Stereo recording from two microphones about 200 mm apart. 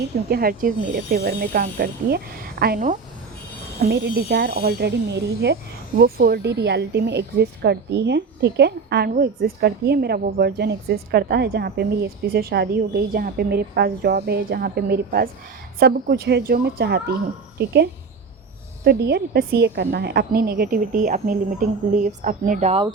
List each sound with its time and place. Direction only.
0.3 s speech: 50° right (ahead or behind)
18.9 s a woman's voice: 55° right (ahead or behind); by 22.9 s 30° right (ahead or behind)